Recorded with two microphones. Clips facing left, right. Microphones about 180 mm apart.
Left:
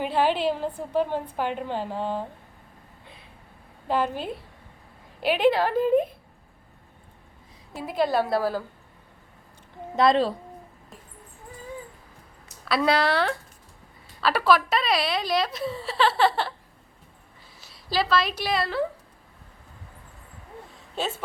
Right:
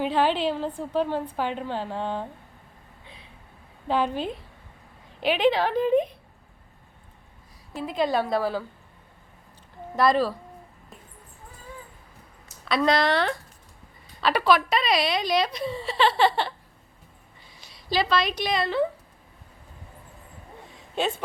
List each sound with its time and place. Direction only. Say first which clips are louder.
0.0 s a woman's voice: even; 10° left (ahead or behind)
3.8 s a woman's voice: right 1 dB; 10° left (ahead or behind)
7.8 s a woman's voice: left 1 dB; 10° left (ahead or behind)
9.9 s a woman's voice: left 1 dB; 25° left (ahead or behind)
12.6 s a woman's voice: even; 5° left (ahead or behind)
17.6 s a woman's voice: right 1 dB; centre (ahead or behind)